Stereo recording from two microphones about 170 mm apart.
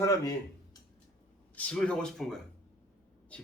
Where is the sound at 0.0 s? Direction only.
20° left (ahead or behind).